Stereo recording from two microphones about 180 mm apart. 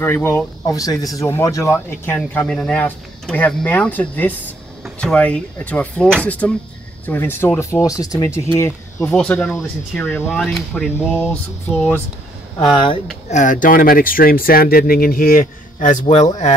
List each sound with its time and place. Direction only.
0.0 s speech: 10° left (ahead or behind)
12.7 s speech: 25° left (ahead or behind)
13.3 s speech: 45° left (ahead or behind)